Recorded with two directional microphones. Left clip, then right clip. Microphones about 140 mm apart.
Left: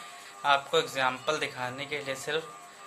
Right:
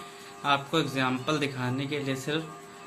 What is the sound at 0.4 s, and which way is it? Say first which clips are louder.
A man's voice: left 1 dB; 30° left (ahead or behind).